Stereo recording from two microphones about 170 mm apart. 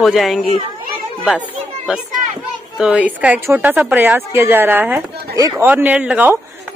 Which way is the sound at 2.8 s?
5° right (ahead or behind).